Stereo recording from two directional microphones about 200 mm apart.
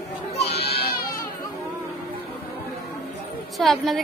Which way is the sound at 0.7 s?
50° left (ahead or behind).